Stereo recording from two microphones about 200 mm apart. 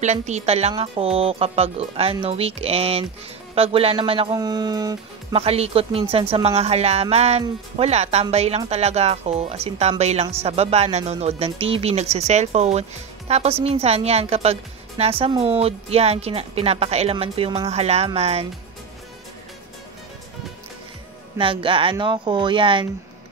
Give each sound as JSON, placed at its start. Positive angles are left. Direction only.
{"t": 0.0, "sound": "a woman's voice", "side_deg": -35}
{"t": 5.4, "sound": "a woman's voice", "side_deg": -30}
{"t": 21.4, "sound": "speech", "side_deg": -25}